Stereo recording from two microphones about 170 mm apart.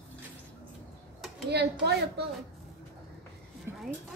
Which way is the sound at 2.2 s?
70° right (ahead or behind).